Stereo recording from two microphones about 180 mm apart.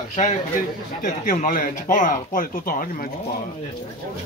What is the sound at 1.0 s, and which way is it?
Speech, 50° left (ahead or behind).